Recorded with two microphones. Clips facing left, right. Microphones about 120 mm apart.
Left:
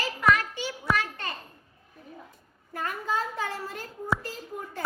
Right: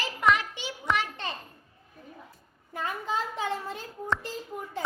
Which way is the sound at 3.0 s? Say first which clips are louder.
Left 2 dB; 20° right (ahead or behind).